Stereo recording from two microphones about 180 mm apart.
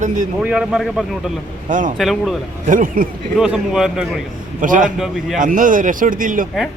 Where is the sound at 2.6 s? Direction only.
50° right (ahead or behind).